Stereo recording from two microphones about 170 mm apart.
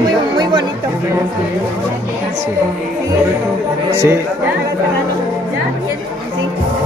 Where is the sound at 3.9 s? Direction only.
15° right (ahead or behind).